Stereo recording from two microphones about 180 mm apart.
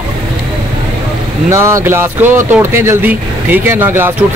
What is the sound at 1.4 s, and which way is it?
Speech, 15° right (ahead or behind).